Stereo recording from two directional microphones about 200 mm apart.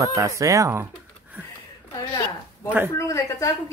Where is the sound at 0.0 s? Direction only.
15° right (ahead or behind).